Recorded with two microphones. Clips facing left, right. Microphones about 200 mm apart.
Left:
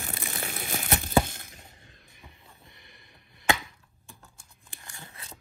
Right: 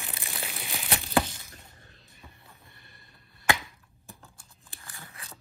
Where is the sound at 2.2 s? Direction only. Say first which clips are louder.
Right 1 dB; 15° left (ahead or behind).